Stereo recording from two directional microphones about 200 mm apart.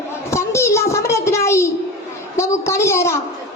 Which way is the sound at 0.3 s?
15° left (ahead or behind).